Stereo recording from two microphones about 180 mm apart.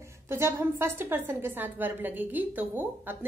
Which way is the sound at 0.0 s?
15° right (ahead or behind).